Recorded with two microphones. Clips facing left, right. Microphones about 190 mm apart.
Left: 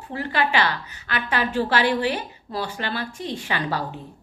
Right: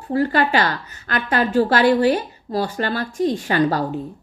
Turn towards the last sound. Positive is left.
turn(degrees=-45)  # may be behind; listen again after turning